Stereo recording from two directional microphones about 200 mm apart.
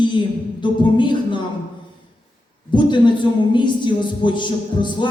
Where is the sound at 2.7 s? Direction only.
25° left (ahead or behind).